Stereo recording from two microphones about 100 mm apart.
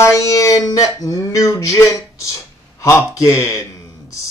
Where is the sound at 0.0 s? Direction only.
30° left (ahead or behind).